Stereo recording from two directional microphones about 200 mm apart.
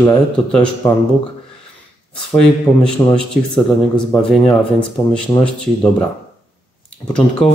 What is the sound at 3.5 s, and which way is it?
A man's voice, centre (ahead or behind).